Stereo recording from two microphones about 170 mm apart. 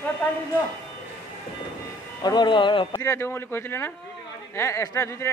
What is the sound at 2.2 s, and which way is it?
Speech, 25° left (ahead or behind).